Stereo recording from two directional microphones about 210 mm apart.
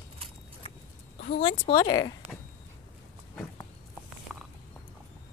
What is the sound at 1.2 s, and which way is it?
Speech, 30° left (ahead or behind).